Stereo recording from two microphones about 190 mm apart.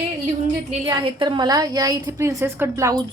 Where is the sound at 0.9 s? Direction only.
25° right (ahead or behind).